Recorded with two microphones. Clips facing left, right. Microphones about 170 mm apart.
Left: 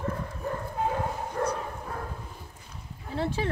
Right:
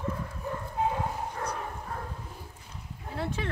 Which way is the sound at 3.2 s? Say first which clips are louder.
Left 4 dB; 30° left (ahead or behind).